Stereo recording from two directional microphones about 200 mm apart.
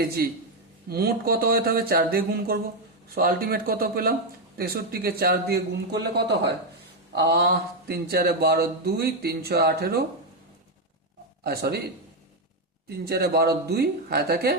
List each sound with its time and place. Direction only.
0.9 s speech: 50° right (ahead or behind)
11.4 s speech: 50° right (ahead or behind)
13.1 s speech: 50° right (ahead or behind)